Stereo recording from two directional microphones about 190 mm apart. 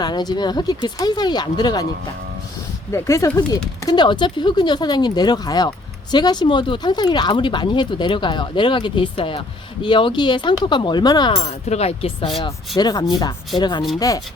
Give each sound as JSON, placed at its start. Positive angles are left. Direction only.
{"t": 0.0, "sound": "speech", "side_deg": 20}
{"t": 2.9, "sound": "speech", "side_deg": 15}